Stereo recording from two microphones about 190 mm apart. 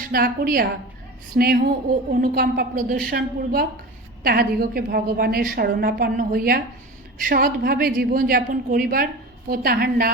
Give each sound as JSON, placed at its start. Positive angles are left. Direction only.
{"t": 0.1, "sound": "a woman's voice", "side_deg": -50}